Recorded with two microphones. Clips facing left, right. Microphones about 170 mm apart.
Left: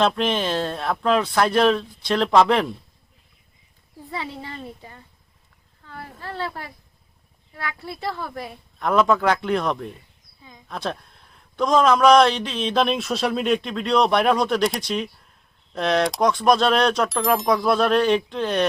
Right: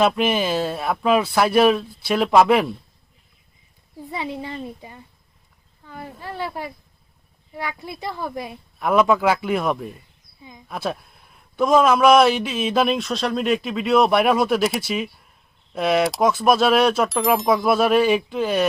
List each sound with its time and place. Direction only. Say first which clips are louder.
0.0 s speech: right 2 dB; 10° right (ahead or behind)
4.1 s speech: right 3 dB; 15° right (ahead or behind)